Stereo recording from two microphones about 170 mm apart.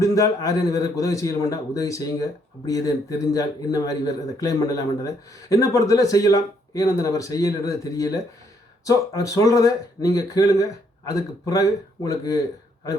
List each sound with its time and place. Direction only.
0.0 s a man's voice: 20° left (ahead or behind)